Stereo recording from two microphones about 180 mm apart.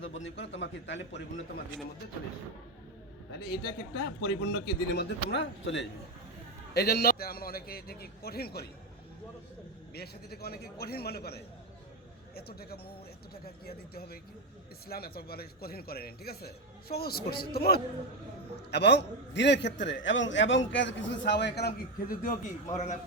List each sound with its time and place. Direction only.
0.0 s a man's voice: 90° left
3.3 s a man's voice: 65° left (ahead or behind); by 5.9 s 85° left
6.7 s a man's voice: 60° left (ahead or behind)
9.9 s a man's voice: 60° left (ahead or behind); by 23.0 s 40° left (ahead or behind)